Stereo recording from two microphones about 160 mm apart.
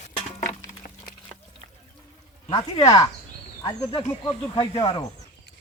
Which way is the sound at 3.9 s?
30° left (ahead or behind).